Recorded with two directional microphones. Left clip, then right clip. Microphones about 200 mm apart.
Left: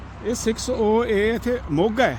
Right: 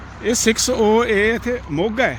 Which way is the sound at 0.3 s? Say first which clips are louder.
Right 6 dB; 15° right (ahead or behind).